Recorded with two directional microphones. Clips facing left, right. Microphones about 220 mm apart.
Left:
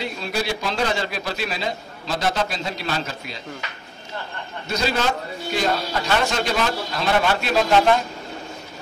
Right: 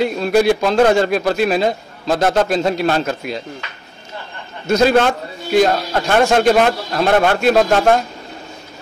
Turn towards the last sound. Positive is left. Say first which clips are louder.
# right 5 dB
turn(degrees=-50)  # may be behind; listen again after turning